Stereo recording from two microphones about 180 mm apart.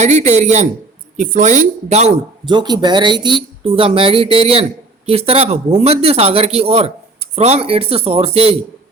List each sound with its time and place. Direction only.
0.0 s a man's voice: 40° right (ahead or behind)
2.5 s a man's voice: 25° right (ahead or behind)